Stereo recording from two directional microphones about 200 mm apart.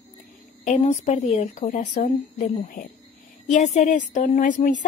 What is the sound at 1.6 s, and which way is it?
A woman's voice, 45° left (ahead or behind).